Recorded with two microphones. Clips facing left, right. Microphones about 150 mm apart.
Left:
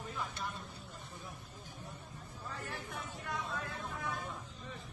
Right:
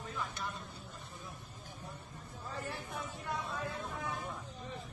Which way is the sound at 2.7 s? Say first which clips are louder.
Right 1 dB; 20° right (ahead or behind).